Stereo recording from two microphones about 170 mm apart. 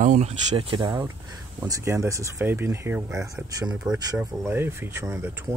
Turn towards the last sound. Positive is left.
turn(degrees=-15)  # may be behind; listen again after turning